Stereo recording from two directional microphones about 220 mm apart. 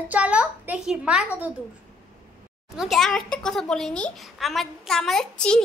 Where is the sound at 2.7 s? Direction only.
Centre (ahead or behind).